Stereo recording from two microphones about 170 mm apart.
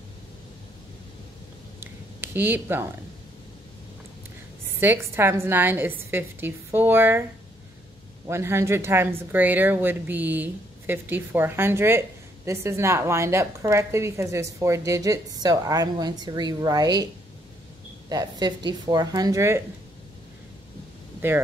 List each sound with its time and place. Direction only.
1.8 s a sound: 10° right (ahead or behind)
4.7 s a woman's voice: 15° right (ahead or behind)
8.3 s a woman's voice: 15° right (ahead or behind)
21.2 s a woman's voice: 15° right (ahead or behind)